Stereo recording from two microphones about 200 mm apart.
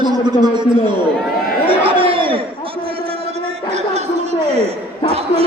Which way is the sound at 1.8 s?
25° right (ahead or behind).